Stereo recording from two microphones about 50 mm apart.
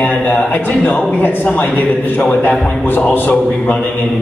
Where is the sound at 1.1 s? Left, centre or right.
Left.